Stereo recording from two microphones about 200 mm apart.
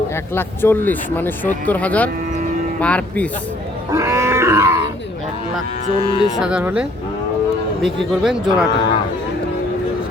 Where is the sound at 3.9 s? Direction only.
15° right (ahead or behind).